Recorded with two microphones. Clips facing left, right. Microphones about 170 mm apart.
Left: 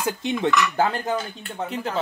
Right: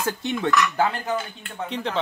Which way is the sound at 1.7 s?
5° left (ahead or behind).